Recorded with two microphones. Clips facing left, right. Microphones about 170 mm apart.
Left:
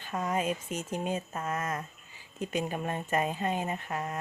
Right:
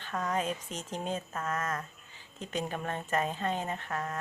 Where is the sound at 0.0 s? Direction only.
10° left (ahead or behind).